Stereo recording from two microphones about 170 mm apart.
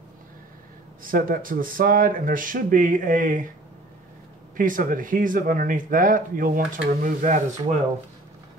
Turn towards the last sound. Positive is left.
turn(degrees=-50)  # may be behind; listen again after turning